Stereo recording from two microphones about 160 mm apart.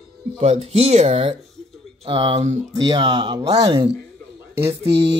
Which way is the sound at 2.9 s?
25° right (ahead or behind).